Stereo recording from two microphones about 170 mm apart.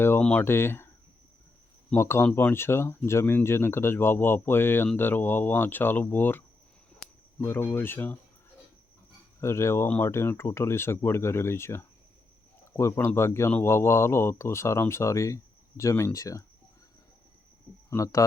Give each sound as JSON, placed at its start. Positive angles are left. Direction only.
{"t": 0.0, "sound": "speech", "side_deg": 10}
{"t": 1.9, "sound": "speech", "side_deg": 15}
{"t": 9.4, "sound": "speech", "side_deg": 15}
{"t": 17.9, "sound": "speech", "side_deg": 20}